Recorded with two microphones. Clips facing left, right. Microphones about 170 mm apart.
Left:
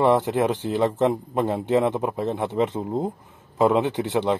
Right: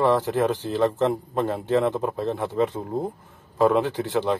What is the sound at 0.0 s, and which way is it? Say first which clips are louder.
A man's voice: left 1 dB; 20° left (ahead or behind).